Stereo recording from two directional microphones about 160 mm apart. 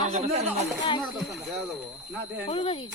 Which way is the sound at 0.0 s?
45° right (ahead or behind).